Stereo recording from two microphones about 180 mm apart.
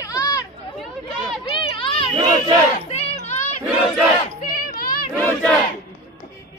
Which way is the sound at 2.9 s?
35° left (ahead or behind).